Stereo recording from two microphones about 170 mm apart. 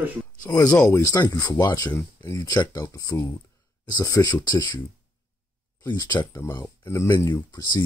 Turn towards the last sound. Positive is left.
turn(degrees=25)  # may be behind; listen again after turning